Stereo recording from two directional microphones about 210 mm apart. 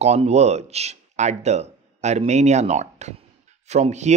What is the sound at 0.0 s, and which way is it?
Speech, 30° right (ahead or behind).